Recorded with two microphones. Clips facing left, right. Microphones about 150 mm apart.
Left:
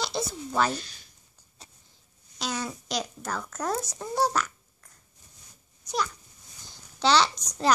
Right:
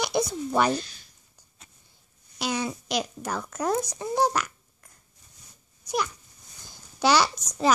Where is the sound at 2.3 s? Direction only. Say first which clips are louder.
Right 4 dB; 10° right (ahead or behind).